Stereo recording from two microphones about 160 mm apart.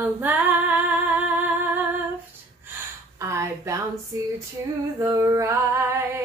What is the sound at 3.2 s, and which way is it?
Female singing, 15° right (ahead or behind).